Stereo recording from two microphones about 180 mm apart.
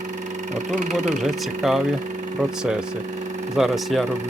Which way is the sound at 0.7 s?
40° right (ahead or behind).